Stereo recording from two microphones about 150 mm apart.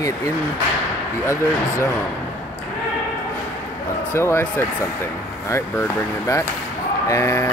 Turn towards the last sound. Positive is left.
turn(degrees=20)  # may be behind; listen again after turning